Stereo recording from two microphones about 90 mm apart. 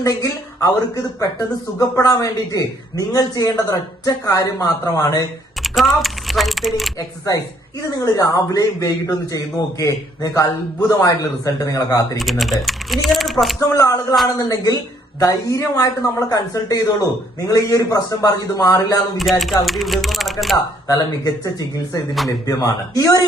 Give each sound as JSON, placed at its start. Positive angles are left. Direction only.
{"t": 0.0, "sound": "a man's voice", "side_deg": 40}
{"t": 2.0, "sound": "a man's voice", "side_deg": 40}
{"t": 5.6, "sound": "speech", "side_deg": 0}
{"t": 7.9, "sound": "a man's voice", "side_deg": 40}
{"t": 12.1, "sound": "speech", "side_deg": 0}
{"t": 13.6, "sound": "a man's voice", "side_deg": 40}
{"t": 19.1, "sound": "speech", "side_deg": 0}
{"t": 20.8, "sound": "speech", "side_deg": 40}
{"t": 22.4, "sound": "a man's voice", "side_deg": 40}